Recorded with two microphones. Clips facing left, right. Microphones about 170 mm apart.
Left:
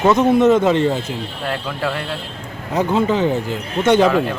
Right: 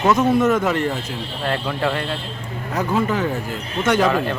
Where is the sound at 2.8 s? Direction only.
20° left (ahead or behind).